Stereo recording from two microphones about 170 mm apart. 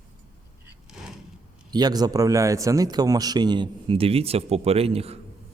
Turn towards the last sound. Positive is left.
turn(degrees=-35)  # may be behind; listen again after turning